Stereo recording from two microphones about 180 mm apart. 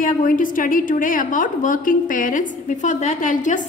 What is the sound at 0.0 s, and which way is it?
A woman's voice, 50° left (ahead or behind).